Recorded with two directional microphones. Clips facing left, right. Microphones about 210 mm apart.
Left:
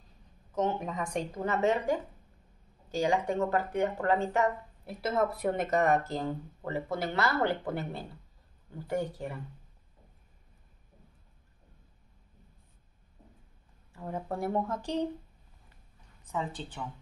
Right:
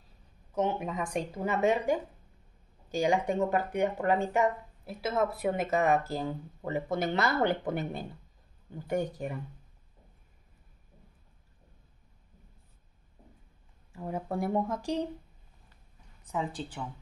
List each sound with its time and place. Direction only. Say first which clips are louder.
0.6 s speech: right 1 dB; 10° right (ahead or behind)
4.8 s speech: even; centre (ahead or behind)
6.6 s speech: right 3 dB; 20° right (ahead or behind)
13.9 s speech: right 2 dB; 15° right (ahead or behind)
16.3 s speech: right 1 dB; 15° right (ahead or behind)